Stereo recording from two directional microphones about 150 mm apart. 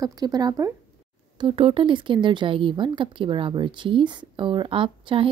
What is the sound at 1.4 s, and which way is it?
A woman's voice, 40° right (ahead or behind).